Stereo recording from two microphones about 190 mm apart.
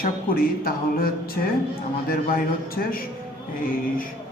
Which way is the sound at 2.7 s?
50° left (ahead or behind).